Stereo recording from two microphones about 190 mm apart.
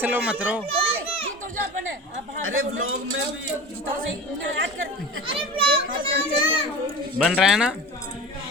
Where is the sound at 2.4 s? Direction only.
90° right.